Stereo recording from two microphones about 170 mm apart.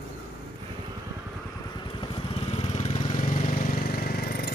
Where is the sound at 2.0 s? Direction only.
35° left (ahead or behind).